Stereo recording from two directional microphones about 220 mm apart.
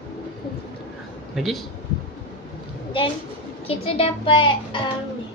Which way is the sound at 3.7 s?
25° left (ahead or behind).